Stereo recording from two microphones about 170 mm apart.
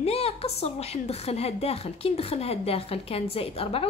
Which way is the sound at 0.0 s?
35° left (ahead or behind).